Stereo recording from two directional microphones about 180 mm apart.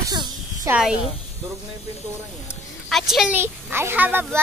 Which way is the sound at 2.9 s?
Centre (ahead or behind).